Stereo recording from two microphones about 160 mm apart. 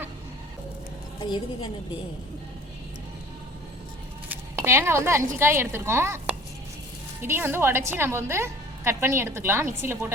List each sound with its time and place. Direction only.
1.2 s a woman's voice: 30° left (ahead or behind)
4.3 s a woman's voice: 15° right (ahead or behind)